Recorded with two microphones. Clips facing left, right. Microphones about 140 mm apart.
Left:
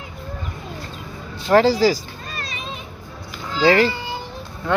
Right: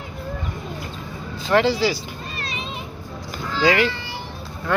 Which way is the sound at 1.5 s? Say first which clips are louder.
Left 4 dB; 40° left (ahead or behind).